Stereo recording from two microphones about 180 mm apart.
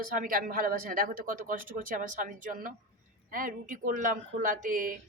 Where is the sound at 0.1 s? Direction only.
50° right (ahead or behind).